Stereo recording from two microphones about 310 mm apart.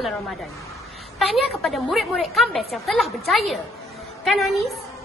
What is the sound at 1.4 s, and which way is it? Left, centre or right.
A woman's voice, centre.